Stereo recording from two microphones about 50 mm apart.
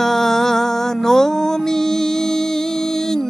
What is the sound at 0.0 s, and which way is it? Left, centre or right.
Music, centre.